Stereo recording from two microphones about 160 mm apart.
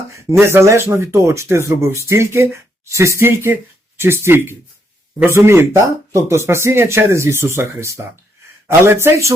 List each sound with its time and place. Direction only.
0.2 s speech: 15° right (ahead or behind)